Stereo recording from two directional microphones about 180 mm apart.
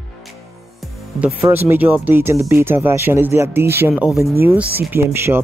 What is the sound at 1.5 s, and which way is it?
Speech, 10° right (ahead or behind).